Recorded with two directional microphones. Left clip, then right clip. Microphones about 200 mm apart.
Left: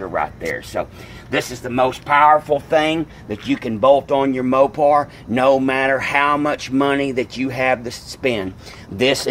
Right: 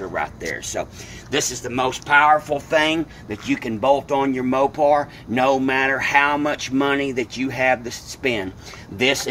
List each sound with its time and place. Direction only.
0.1 s speech: 30° left (ahead or behind)
1.4 s speech: 45° left (ahead or behind)